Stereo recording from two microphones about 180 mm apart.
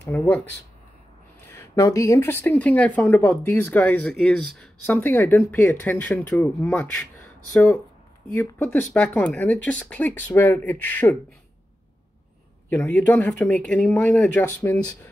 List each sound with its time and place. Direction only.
0.0 s speech: 10° left (ahead or behind)
1.5 s speech: 15° left (ahead or behind)
7.5 s speech: 20° left (ahead or behind)
12.6 s speech: 10° left (ahead or behind)